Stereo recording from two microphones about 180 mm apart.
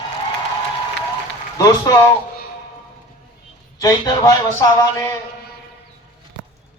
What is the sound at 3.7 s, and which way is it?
A man's voice, 20° left (ahead or behind).